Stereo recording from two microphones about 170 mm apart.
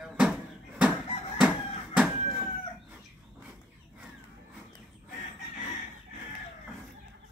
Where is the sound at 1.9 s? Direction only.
Centre (ahead or behind).